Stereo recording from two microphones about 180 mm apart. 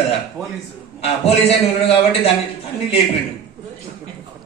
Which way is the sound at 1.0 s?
35° left (ahead or behind).